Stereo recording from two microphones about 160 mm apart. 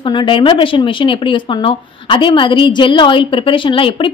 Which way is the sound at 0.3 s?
35° left (ahead or behind).